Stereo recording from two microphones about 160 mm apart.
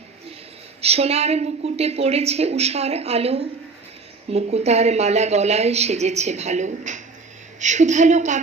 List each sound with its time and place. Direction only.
0.8 s a woman's voice: 40° right (ahead or behind)